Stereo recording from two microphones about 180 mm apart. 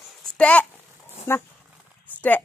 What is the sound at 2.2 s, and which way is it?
Speech, 10° left (ahead or behind).